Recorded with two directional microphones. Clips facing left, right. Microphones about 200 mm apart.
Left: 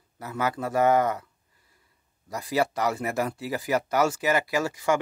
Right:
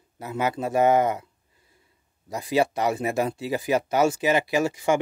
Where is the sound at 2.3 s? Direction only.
25° right (ahead or behind).